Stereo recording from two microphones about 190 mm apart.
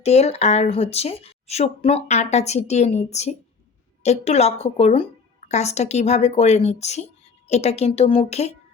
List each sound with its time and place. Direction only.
0.0 s speech: 35° left (ahead or behind)